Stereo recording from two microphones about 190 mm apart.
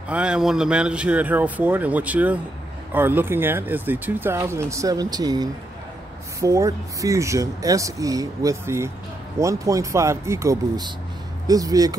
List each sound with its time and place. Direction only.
0.1 s speech: 5° right (ahead or behind)